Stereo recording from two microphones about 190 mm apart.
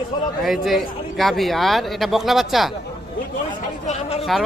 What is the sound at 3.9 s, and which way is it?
Speech, 35° left (ahead or behind).